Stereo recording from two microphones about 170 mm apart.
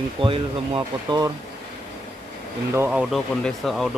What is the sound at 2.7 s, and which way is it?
Speech, 10° right (ahead or behind).